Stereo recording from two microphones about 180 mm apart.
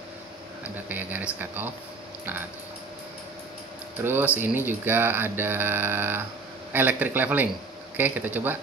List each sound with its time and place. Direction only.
0.8 s speech: 10° right (ahead or behind)
4.0 s speech: 10° right (ahead or behind)